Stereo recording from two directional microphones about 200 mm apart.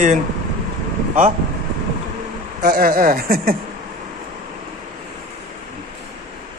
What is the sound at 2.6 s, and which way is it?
Speech, 45° right (ahead or behind).